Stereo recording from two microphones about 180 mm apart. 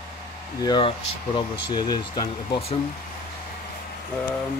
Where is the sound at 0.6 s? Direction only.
25° left (ahead or behind).